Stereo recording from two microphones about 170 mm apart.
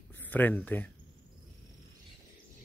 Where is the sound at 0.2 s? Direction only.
10° left (ahead or behind).